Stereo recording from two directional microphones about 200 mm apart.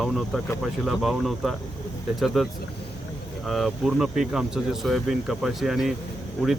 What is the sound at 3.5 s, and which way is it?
Speech, centre (ahead or behind).